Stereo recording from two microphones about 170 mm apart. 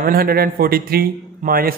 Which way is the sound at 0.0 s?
60° right (ahead or behind).